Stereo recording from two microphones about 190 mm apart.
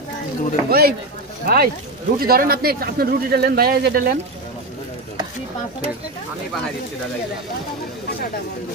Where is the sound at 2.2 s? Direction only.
50° right (ahead or behind).